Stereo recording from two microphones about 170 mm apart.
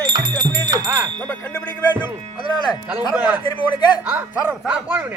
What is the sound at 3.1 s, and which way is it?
Speech, 5° right (ahead or behind).